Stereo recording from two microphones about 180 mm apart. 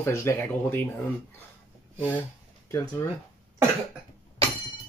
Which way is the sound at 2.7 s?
15° left (ahead or behind).